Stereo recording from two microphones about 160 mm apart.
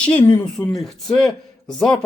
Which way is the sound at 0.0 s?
5° left (ahead or behind).